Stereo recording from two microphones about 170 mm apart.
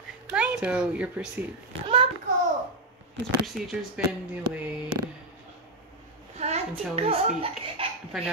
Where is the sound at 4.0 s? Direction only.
5° right (ahead or behind).